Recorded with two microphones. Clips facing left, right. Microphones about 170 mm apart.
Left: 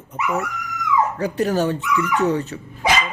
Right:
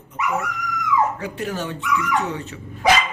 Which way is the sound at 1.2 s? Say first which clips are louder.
Left 7 dB; 40° left (ahead or behind).